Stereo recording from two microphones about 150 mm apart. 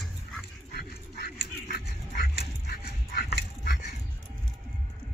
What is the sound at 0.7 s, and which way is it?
Dog, 90° left.